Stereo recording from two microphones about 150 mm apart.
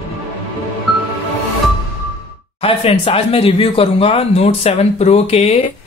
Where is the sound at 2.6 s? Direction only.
40° left (ahead or behind).